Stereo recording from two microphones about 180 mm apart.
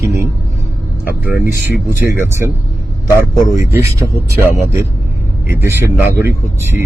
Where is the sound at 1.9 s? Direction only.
15° right (ahead or behind).